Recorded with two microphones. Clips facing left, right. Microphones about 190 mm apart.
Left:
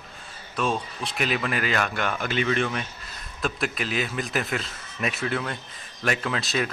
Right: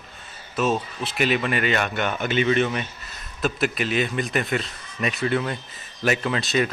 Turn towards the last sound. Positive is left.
turn(degrees=0)  # may be behind; listen again after turning